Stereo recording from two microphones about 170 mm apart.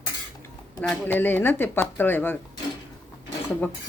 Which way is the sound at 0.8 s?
5° left (ahead or behind).